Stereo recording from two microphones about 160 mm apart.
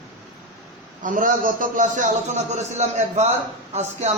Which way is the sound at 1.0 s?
55° right (ahead or behind).